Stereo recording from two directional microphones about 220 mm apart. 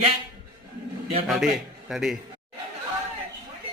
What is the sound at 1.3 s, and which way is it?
Speech, centre (ahead or behind).